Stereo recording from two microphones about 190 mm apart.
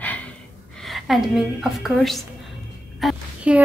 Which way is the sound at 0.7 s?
Centre (ahead or behind).